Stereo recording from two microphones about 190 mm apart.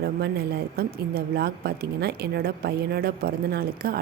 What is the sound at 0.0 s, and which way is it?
Speech, 55° right (ahead or behind).